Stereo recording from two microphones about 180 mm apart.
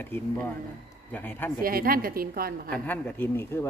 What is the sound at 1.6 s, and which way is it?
A woman's voice, 55° right (ahead or behind).